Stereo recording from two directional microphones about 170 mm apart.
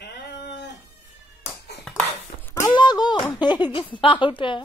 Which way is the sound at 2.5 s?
20° left (ahead or behind).